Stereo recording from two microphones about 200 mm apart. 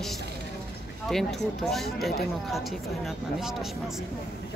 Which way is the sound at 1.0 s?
Centre (ahead or behind).